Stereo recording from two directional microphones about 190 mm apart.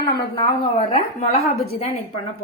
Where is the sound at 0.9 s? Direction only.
35° left (ahead or behind).